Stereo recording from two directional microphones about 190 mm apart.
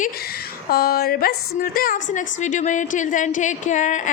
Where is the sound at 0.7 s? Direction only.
55° left (ahead or behind).